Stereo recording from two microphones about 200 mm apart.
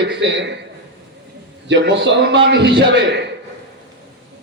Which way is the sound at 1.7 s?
60° right (ahead or behind).